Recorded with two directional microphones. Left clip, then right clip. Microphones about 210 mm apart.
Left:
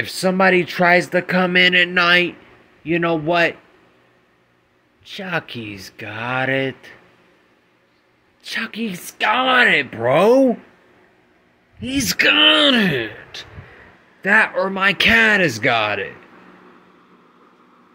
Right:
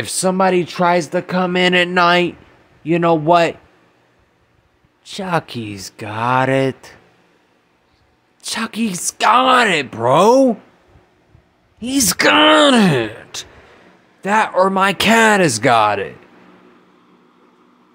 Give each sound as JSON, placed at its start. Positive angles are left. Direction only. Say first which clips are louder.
{"t": 0.0, "sound": "speech", "louder": "right 1 dB", "side_deg": -15}
{"t": 1.6, "sound": "speech", "louder": "right 1 dB", "side_deg": -30}
{"t": 5.0, "sound": "speech", "louder": "right 4 dB", "side_deg": -30}
{"t": 8.4, "sound": "speech", "louder": "right 3 dB", "side_deg": -30}
{"t": 9.8, "sound": "speech", "louder": "right 3 dB", "side_deg": -15}
{"t": 11.8, "sound": "speech", "louder": "right 2 dB", "side_deg": -30}
{"t": 14.2, "sound": "speech", "louder": "left 1 dB", "side_deg": -15}
{"t": 14.5, "sound": "speech", "louder": "right 4 dB", "side_deg": -30}